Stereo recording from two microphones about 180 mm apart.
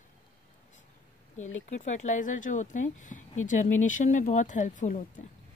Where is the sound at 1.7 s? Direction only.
40° left (ahead or behind).